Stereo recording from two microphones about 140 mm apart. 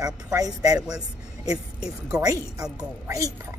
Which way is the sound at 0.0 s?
25° right (ahead or behind).